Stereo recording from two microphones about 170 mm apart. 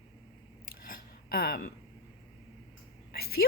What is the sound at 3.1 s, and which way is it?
Speech, 65° left (ahead or behind).